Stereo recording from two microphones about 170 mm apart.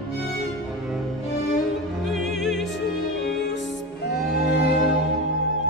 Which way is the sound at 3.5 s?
85° left.